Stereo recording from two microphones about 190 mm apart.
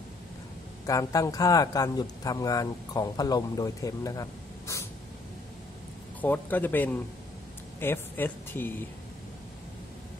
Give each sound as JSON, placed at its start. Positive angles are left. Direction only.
{"t": 0.8, "sound": "a man's voice", "side_deg": 15}
{"t": 6.2, "sound": "speech", "side_deg": 10}